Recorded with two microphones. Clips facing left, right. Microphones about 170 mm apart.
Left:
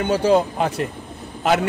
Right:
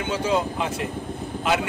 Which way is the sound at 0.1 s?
40° left (ahead or behind).